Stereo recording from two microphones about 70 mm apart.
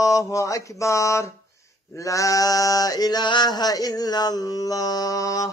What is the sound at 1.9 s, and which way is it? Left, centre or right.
Male singing, left.